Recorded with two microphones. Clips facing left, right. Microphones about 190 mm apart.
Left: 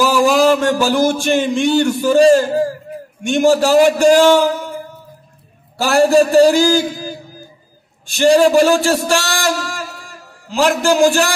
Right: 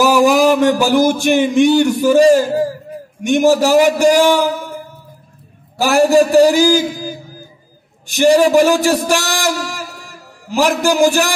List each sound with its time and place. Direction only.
0.0 s a man's voice: 15° right (ahead or behind)
5.8 s a man's voice: 15° right (ahead or behind)